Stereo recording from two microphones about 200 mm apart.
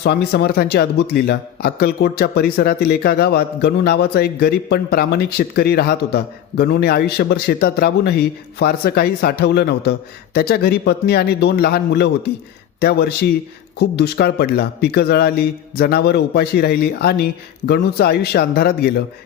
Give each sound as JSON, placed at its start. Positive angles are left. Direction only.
{"t": 0.0, "sound": "speech", "side_deg": 55}